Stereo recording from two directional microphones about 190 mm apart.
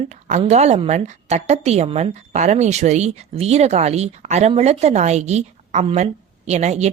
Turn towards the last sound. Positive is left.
turn(degrees=-35)  # may be behind; listen again after turning